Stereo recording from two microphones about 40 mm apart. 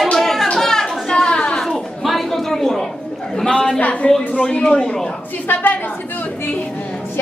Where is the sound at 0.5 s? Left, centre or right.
Centre.